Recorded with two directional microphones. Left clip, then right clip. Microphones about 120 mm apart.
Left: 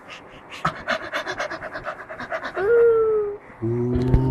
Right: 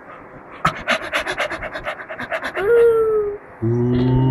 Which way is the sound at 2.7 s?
10° left (ahead or behind).